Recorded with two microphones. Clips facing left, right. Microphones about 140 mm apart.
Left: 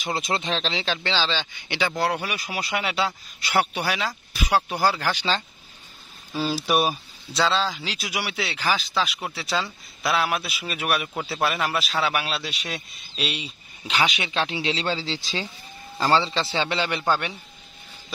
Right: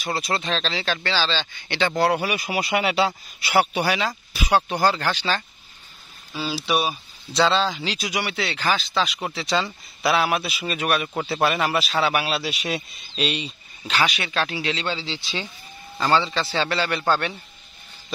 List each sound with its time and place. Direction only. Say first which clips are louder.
0.0 s speech: right 1 dB; 20° left (ahead or behind)
2.0 s speech: right 4 dB; 5° right (ahead or behind); by 5.4 s 15° left (ahead or behind)
6.6 s speech: even; 45° left (ahead or behind)
6.9 s speech: left 1 dB; centre (ahead or behind)
13.8 s speech: right 1 dB; 15° left (ahead or behind)